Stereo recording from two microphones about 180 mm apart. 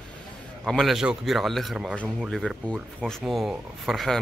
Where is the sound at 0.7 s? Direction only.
Centre (ahead or behind).